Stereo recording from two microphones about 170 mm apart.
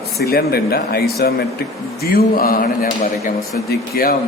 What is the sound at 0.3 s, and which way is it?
A man's voice, 65° left (ahead or behind).